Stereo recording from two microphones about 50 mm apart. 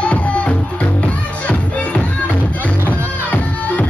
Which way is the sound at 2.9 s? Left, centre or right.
Left.